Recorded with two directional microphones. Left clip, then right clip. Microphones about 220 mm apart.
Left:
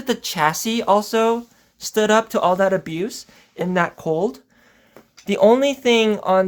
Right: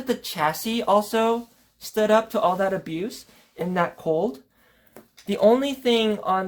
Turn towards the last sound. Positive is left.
turn(degrees=30)  # may be behind; listen again after turning